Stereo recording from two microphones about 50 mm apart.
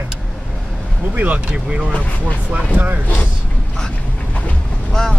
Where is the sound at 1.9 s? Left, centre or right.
Left.